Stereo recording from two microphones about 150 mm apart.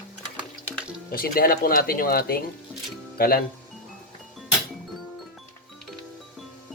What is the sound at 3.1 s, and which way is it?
Speech, 90° left.